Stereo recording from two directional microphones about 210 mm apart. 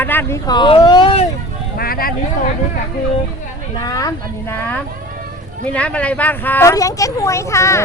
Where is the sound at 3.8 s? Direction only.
15° left (ahead or behind).